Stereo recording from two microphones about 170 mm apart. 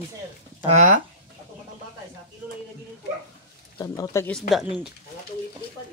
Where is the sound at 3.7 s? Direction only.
20° left (ahead or behind).